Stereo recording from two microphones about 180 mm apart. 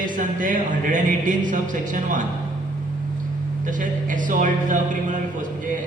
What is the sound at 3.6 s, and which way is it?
Speech, 45° right (ahead or behind).